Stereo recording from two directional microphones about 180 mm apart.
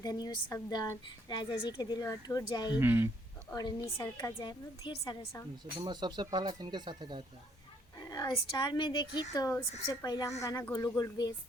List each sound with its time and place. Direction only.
0.0 s a woman's voice: 20° left (ahead or behind)
2.7 s speech: 10° right (ahead or behind)
3.5 s a woman's voice: 20° left (ahead or behind)
4.8 s a woman's voice: 30° left (ahead or behind)
5.8 s speech: 25° right (ahead or behind)
8.0 s a woman's voice: 20° left (ahead or behind)